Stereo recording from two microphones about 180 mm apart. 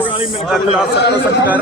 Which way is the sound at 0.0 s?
30° left (ahead or behind).